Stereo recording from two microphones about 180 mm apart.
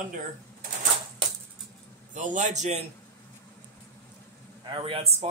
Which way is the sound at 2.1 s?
45° right (ahead or behind).